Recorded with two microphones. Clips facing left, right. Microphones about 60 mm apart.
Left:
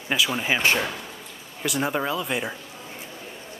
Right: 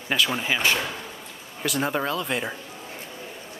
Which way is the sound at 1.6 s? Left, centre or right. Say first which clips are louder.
Even; centre.